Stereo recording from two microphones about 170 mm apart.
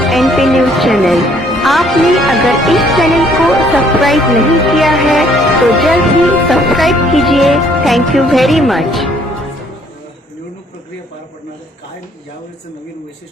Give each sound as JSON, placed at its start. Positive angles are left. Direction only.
{"t": 0.0, "sound": "speech", "side_deg": 0}
{"t": 5.6, "sound": "music", "side_deg": 0}